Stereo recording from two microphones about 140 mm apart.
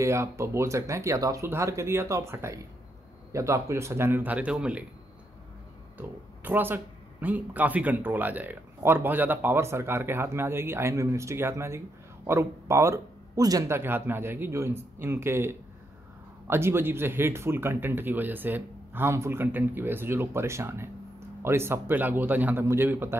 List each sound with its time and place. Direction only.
0.0 s a man's voice: 20° right (ahead or behind)
5.9 s a man's voice: 15° right (ahead or behind)